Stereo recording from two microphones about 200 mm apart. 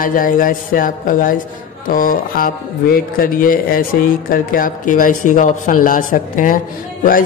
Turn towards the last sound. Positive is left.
turn(degrees=45)  # may be behind; listen again after turning